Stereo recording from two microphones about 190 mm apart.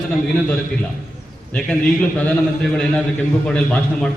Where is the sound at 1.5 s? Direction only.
5° left (ahead or behind).